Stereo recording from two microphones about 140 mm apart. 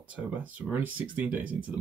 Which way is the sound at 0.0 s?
10° right (ahead or behind).